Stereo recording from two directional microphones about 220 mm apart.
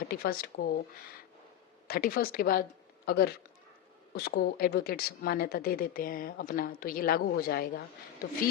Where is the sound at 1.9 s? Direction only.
40° left (ahead or behind).